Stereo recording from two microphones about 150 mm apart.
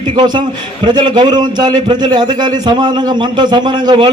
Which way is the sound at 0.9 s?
30° right (ahead or behind).